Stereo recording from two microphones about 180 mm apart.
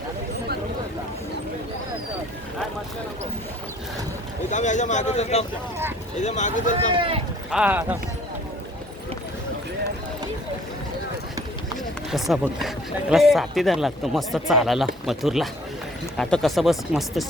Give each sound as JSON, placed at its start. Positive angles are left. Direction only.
{"t": 4.5, "sound": "speech", "side_deg": 40}
{"t": 6.9, "sound": "speech", "side_deg": -30}
{"t": 7.5, "sound": "speech", "side_deg": -10}
{"t": 12.1, "sound": "speech", "side_deg": 0}